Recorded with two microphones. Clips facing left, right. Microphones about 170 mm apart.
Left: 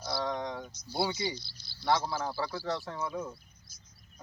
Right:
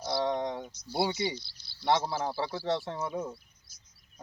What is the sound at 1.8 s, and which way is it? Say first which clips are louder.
Speech: right 2 dB; 25° right (ahead or behind).